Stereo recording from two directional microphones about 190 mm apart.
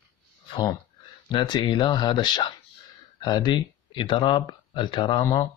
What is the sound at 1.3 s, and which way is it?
Speech, 25° left (ahead or behind).